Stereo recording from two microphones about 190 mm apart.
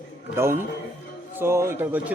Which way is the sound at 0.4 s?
15° right (ahead or behind).